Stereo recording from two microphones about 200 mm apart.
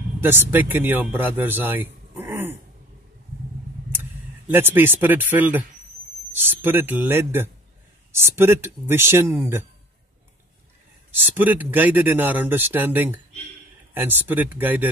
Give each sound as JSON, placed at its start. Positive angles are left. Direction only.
{"t": 0.2, "sound": "a man's voice", "side_deg": -10}
{"t": 4.5, "sound": "speech", "side_deg": -10}
{"t": 11.1, "sound": "speech", "side_deg": -10}